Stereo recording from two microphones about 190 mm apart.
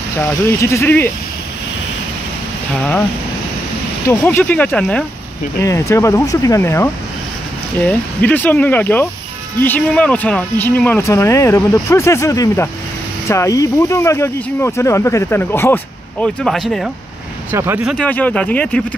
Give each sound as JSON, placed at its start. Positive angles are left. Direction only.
{"t": 0.2, "sound": "speech", "side_deg": 15}
{"t": 4.1, "sound": "speech", "side_deg": 10}
{"t": 17.5, "sound": "speech", "side_deg": -15}
{"t": 17.8, "sound": "speech", "side_deg": 5}